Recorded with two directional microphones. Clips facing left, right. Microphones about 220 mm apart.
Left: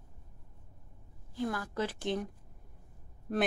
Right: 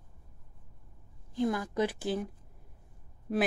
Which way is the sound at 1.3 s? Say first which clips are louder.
Right 5 dB; 20° right (ahead or behind).